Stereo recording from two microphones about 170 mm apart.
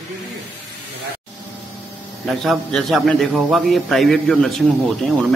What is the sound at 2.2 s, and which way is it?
A man's voice, centre (ahead or behind).